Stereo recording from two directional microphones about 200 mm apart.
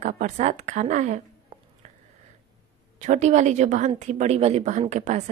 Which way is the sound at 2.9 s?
35° right (ahead or behind).